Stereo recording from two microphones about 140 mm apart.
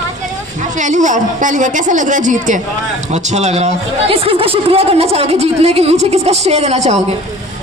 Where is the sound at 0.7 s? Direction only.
60° right (ahead or behind).